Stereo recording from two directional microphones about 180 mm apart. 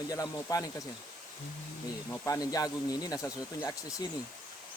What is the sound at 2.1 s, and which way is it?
Speech, 10° left (ahead or behind).